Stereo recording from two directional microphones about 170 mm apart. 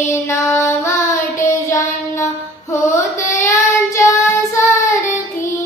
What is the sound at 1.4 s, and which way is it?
Child singing, 20° left (ahead or behind).